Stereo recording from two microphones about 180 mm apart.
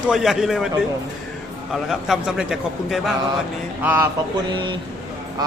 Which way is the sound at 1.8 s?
Centre (ahead or behind).